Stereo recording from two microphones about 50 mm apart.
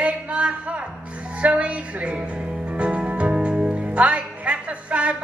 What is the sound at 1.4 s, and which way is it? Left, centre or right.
Music, right.